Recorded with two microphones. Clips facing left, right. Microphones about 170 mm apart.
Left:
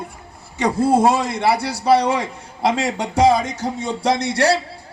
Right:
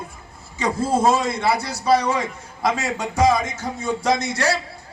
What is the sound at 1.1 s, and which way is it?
A man's voice, 65° left (ahead or behind).